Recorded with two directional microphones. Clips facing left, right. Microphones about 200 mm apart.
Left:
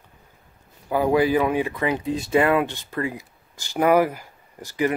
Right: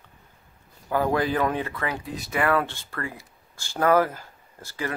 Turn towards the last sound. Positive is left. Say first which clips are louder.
# left 9 dB
turn(degrees=15)  # may be behind; listen again after turning